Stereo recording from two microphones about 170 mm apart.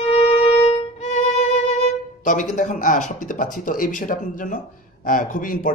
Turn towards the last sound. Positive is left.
turn(degrees=55)  # may be behind; listen again after turning